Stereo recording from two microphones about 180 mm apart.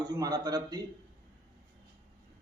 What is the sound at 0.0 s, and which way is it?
Speech, 20° right (ahead or behind).